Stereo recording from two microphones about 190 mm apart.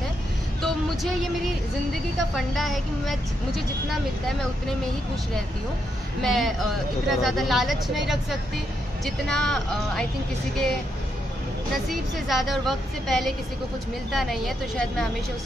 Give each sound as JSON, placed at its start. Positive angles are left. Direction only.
{"t": 0.6, "sound": "a sound", "side_deg": 0}
{"t": 2.3, "sound": "speech", "side_deg": 0}
{"t": 6.2, "sound": "speech", "side_deg": 0}
{"t": 11.9, "sound": "speech", "side_deg": 0}